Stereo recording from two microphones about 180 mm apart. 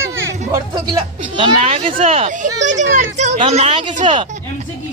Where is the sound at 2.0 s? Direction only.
30° right (ahead or behind).